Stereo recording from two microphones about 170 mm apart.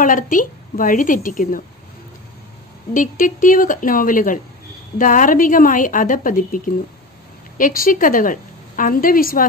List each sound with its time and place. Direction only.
0.0 s a woman's voice: 50° left (ahead or behind)
2.9 s a woman's voice: 50° left (ahead or behind)